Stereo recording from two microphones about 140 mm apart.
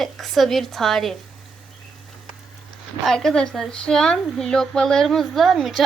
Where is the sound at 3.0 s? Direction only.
5° left (ahead or behind).